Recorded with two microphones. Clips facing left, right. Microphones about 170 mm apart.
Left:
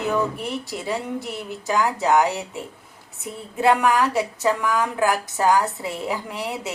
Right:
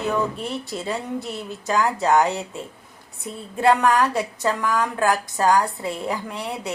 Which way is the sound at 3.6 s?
10° left (ahead or behind).